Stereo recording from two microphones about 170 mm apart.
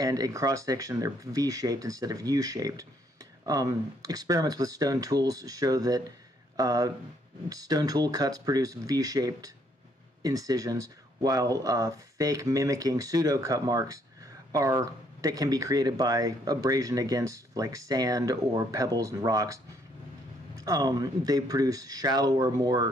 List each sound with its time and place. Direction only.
0.0 s speech: 20° right (ahead or behind)